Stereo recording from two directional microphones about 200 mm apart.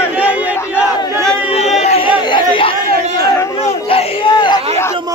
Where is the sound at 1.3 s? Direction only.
30° left (ahead or behind).